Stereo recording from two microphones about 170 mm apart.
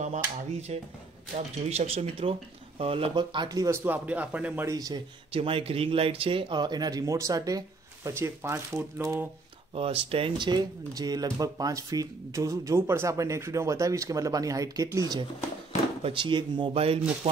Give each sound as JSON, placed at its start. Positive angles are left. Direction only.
{"t": 0.0, "sound": "speech", "side_deg": -40}
{"t": 4.6, "sound": "speech", "side_deg": -20}
{"t": 5.3, "sound": "speech", "side_deg": -35}
{"t": 9.8, "sound": "speech", "side_deg": -35}